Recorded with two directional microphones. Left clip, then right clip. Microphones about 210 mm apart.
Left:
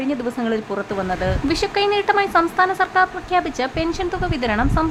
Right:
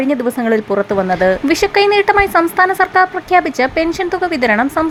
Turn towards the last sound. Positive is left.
turn(degrees=-20)  # may be behind; listen again after turning